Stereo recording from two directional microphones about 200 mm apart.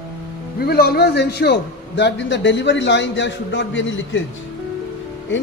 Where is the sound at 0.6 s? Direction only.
50° left (ahead or behind); by 4.2 s 65° left (ahead or behind).